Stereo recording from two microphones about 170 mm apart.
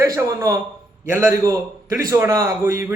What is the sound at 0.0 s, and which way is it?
A man's voice, 20° right (ahead or behind).